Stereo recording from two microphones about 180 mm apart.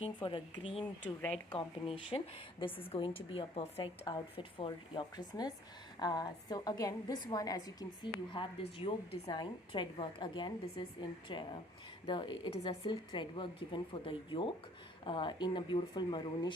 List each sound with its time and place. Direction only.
0.0 s a woman's voice: 30° left (ahead or behind)
1.0 s speech: 10° left (ahead or behind)
1.5 s a woman's voice: 30° left (ahead or behind)